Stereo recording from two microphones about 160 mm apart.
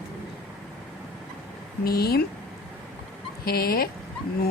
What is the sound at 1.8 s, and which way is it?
Speech, 75° left (ahead or behind).